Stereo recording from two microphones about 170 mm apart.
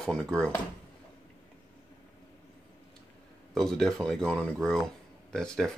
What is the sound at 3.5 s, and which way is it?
Speech, centre (ahead or behind).